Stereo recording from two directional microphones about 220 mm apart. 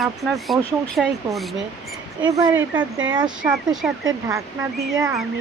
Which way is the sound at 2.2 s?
15° right (ahead or behind).